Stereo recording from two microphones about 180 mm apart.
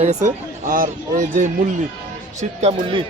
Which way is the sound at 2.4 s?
40° right (ahead or behind).